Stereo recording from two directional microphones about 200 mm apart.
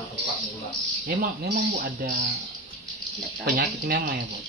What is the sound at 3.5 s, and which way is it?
Speech, 45° right (ahead or behind).